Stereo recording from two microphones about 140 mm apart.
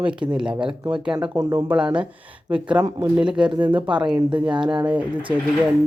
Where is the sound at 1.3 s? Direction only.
30° right (ahead or behind).